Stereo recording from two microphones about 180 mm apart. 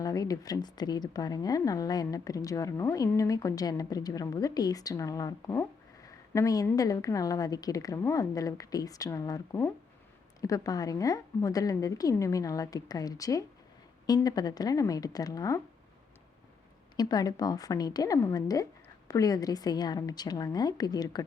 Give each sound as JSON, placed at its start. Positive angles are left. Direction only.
{"t": 0.0, "sound": "a woman's voice", "side_deg": 20}
{"t": 17.0, "sound": "a woman's voice", "side_deg": 20}